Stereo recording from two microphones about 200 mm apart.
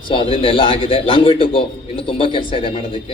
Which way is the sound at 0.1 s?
25° left (ahead or behind).